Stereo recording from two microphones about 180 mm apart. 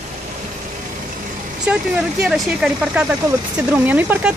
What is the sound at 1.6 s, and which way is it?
Speech, 5° right (ahead or behind).